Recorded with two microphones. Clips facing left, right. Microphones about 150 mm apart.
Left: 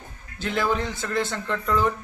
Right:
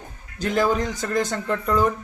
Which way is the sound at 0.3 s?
40° right (ahead or behind).